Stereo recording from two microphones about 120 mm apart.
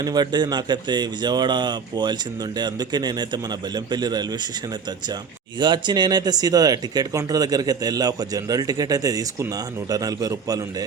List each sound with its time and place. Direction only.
0.0 s speech: 35° right (ahead or behind)
5.5 s speech: 40° right (ahead or behind)